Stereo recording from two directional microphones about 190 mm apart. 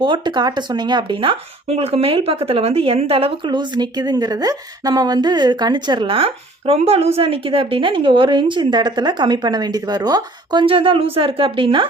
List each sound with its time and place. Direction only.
0.0 s speech: 25° right (ahead or behind)